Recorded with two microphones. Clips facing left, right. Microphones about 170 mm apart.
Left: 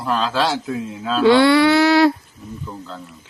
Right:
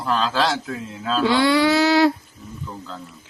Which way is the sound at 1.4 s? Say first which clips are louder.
Left 4 dB; 65° left (ahead or behind).